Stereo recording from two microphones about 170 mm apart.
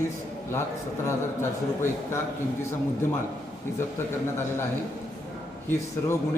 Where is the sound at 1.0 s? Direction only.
15° left (ahead or behind).